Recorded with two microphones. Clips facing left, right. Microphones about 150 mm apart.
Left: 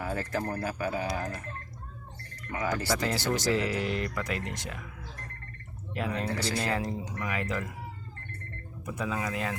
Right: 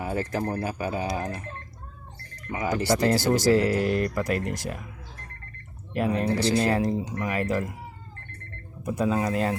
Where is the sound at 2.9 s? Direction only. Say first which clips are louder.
Right 11 dB; 40° right (ahead or behind).